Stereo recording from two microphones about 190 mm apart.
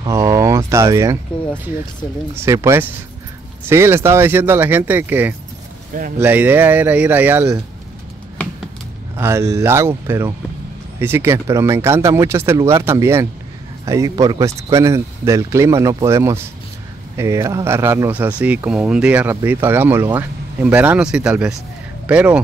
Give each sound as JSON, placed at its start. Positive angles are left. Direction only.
{"t": 0.0, "sound": "a sound", "side_deg": -15}
{"t": 2.3, "sound": "speech", "side_deg": -15}
{"t": 9.1, "sound": "speech", "side_deg": -15}